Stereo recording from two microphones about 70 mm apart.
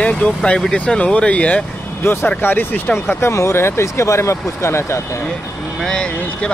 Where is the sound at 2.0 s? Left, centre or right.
Left.